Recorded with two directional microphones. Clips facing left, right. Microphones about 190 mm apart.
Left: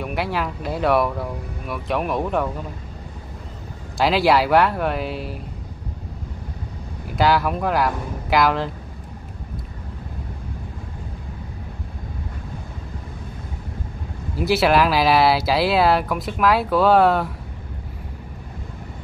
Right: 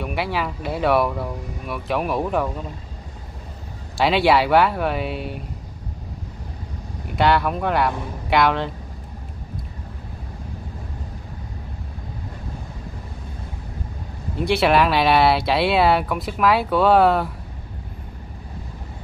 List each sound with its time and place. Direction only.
0.0 s speech: centre (ahead or behind)
4.0 s speech: centre (ahead or behind)
7.1 s speech: centre (ahead or behind)
14.3 s speech: 5° left (ahead or behind)